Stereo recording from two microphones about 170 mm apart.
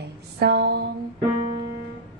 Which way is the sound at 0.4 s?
70° right (ahead or behind).